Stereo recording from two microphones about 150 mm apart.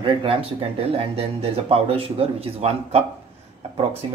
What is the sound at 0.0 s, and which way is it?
Speech, 35° right (ahead or behind).